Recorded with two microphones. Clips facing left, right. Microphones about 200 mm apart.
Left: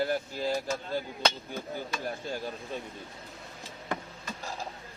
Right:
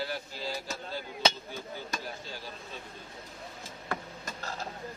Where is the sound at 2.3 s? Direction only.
50° left (ahead or behind).